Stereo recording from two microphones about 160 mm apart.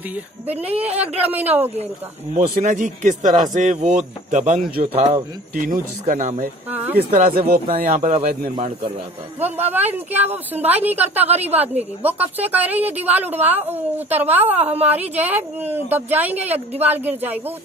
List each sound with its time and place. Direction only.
0.5 s a woman's voice: 40° right (ahead or behind)
0.9 s a woman's voice: 10° right (ahead or behind)
2.3 s speech: 50° right (ahead or behind)
6.7 s a woman's voice: 10° right (ahead or behind)
7.0 s speech: 65° right (ahead or behind)
7.8 s speech: 50° right (ahead or behind)
8.5 s speech: 45° right (ahead or behind)
9.4 s a woman's voice: 10° right (ahead or behind)
11.2 s a woman's voice: 40° right (ahead or behind)
11.7 s a woman's voice: 10° right (ahead or behind)